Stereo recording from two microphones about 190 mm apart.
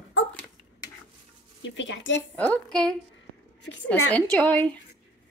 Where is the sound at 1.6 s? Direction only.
75° left (ahead or behind).